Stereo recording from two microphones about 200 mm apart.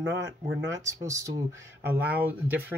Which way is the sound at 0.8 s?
15° right (ahead or behind).